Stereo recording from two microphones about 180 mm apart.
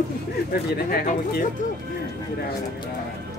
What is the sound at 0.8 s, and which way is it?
Speech, 55° left (ahead or behind).